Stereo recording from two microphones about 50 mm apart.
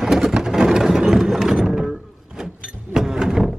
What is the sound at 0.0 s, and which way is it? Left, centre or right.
Music, centre.